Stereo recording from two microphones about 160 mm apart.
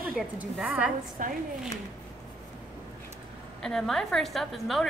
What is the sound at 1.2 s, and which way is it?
Speech, 60° right (ahead or behind).